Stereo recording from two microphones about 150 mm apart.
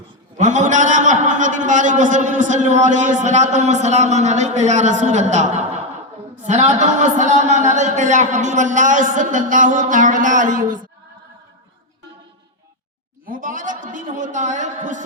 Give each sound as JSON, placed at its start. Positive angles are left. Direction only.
{"t": 0.3, "sound": "a man's voice", "side_deg": -55}
{"t": 13.2, "sound": "a man's voice", "side_deg": -65}